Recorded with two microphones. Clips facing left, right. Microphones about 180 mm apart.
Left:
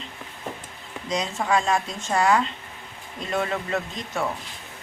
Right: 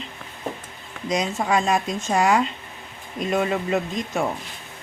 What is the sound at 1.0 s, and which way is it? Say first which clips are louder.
Speech: right 3 dB; 10° right (ahead or behind).